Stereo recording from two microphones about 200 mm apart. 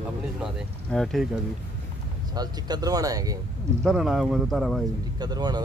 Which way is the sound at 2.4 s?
20° right (ahead or behind).